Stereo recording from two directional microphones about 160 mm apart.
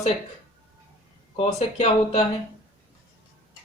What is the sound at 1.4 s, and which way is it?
Speech, 40° left (ahead or behind).